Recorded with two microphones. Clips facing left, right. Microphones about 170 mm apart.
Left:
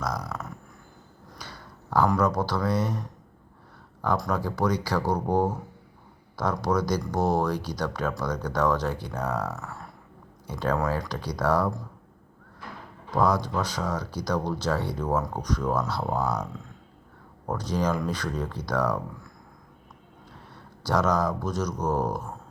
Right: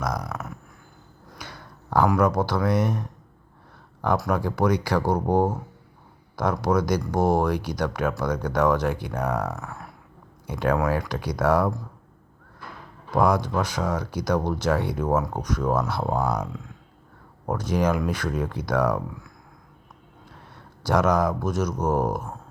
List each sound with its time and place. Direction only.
0.1 s speech: 15° right (ahead or behind)
2.0 s speech: 10° right (ahead or behind)
4.2 s speech: 15° right (ahead or behind)
5.1 s speech: 25° right (ahead or behind)
6.4 s speech: 10° right (ahead or behind)
13.1 s speech: 10° right (ahead or behind)
17.7 s speech: 10° right (ahead or behind)
20.9 s speech: 10° right (ahead or behind)